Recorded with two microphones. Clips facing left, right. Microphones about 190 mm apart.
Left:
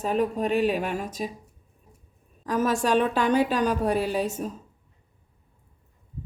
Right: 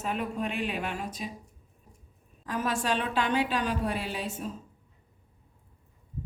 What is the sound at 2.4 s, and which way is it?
A woman's voice, 40° left (ahead or behind).